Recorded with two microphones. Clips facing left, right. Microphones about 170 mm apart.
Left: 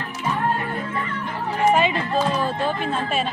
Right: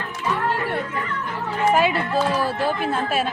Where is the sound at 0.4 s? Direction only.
85° right.